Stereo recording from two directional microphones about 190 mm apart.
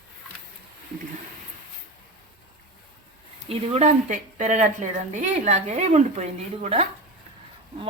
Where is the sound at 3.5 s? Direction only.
35° right (ahead or behind).